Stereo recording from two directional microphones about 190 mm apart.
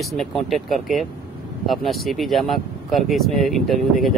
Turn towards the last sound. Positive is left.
turn(degrees=0)  # may be behind; listen again after turning